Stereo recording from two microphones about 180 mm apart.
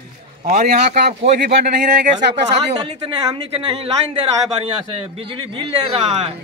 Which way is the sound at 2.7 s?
25° right (ahead or behind).